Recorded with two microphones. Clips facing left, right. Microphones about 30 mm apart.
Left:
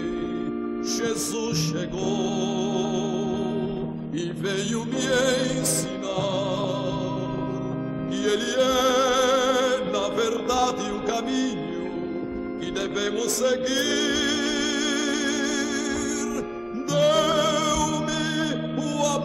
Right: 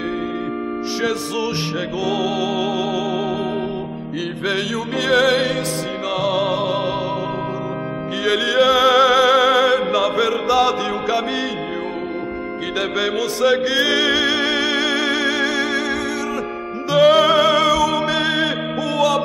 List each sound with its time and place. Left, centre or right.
2.0 s music: right
4.5 s music: right
8.3 s music: right
13.0 s music: right
16.9 s music: right